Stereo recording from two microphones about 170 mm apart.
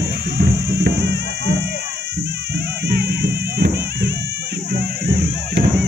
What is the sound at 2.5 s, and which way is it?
Music, 75° right (ahead or behind).